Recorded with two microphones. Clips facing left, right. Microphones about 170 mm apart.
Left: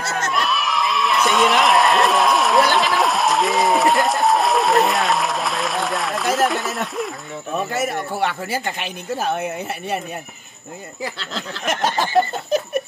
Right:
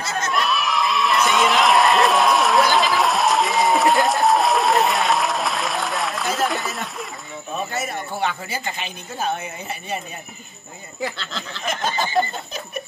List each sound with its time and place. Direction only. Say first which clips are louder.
0.0 s crowd: left 2 dB; 70° left (ahead or behind)
0.3 s a sound: right 2 dB; centre (ahead or behind)
7.7 s speech: left 4 dB; 80° left
11.6 s speech: left 3 dB; 75° left (ahead or behind)